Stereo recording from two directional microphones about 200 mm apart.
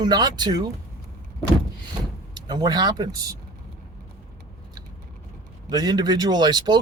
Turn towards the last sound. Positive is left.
turn(degrees=-20)  # may be behind; listen again after turning